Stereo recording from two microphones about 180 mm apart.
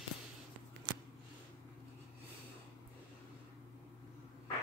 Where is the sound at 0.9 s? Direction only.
25° right (ahead or behind).